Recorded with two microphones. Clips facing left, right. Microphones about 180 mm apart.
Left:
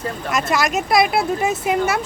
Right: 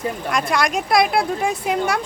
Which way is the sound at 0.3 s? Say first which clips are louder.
Left 1 dB; 5° left (ahead or behind).